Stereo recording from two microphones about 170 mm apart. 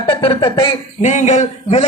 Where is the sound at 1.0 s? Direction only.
45° left (ahead or behind).